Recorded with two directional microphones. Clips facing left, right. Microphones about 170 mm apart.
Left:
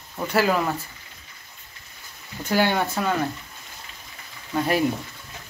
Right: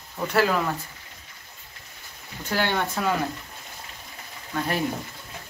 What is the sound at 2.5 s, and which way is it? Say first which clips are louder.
Speech: left 4 dB; 10° left (ahead or behind).